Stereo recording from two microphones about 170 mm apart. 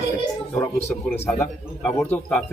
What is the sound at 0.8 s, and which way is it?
Speech, 15° left (ahead or behind).